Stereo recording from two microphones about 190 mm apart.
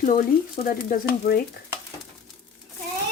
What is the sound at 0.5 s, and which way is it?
Frying, 50° left (ahead or behind).